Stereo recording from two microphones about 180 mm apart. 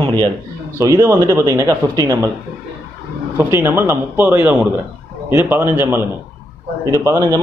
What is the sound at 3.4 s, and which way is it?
A man's voice, 10° right (ahead or behind).